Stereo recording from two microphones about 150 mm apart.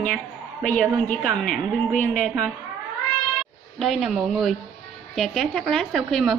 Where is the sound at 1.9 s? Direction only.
55° left (ahead or behind).